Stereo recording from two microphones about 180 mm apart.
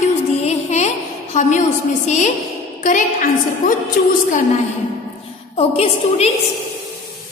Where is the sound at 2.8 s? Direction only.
45° left (ahead or behind).